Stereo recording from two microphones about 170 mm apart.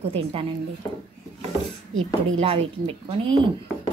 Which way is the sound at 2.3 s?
35° right (ahead or behind).